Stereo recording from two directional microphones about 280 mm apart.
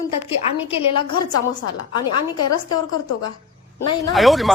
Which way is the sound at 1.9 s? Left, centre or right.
Left.